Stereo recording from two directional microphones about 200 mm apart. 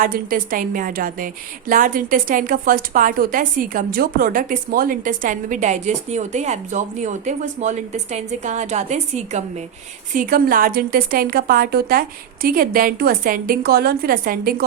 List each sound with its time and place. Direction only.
0.0 s a woman's voice: 45° right (ahead or behind)